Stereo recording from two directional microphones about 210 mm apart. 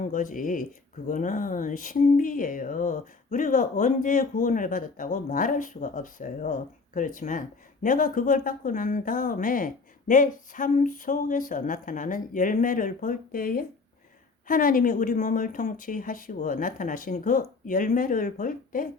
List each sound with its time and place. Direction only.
0.0 s speech: 40° left (ahead or behind)